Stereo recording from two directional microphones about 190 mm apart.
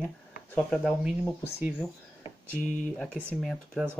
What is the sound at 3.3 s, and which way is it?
Speech, centre (ahead or behind).